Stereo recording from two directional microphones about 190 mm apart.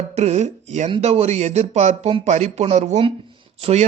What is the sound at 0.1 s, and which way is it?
A man's voice, 35° right (ahead or behind).